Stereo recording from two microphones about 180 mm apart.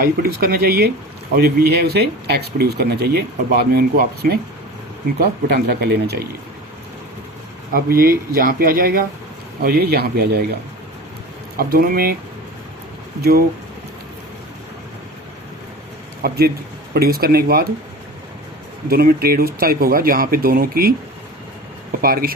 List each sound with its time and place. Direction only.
0.0 s speech: 55° right (ahead or behind)
7.7 s speech: 55° right (ahead or behind)
11.5 s speech: 55° right (ahead or behind)
16.2 s speech: 60° right (ahead or behind)
18.9 s speech: 55° right (ahead or behind)
22.0 s speech: 55° right (ahead or behind)